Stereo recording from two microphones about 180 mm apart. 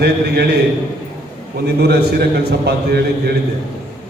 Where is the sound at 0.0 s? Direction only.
65° right (ahead or behind).